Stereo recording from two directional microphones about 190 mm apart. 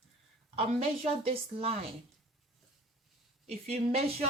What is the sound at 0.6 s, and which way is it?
Speech, 35° right (ahead or behind).